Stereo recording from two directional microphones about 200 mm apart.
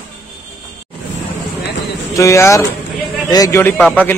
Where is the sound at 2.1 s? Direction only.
15° left (ahead or behind).